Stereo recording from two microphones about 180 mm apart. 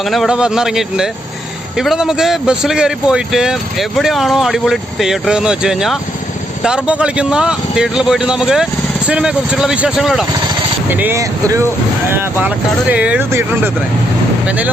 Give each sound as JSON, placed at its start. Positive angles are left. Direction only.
{"t": 0.0, "sound": "speech", "side_deg": 0}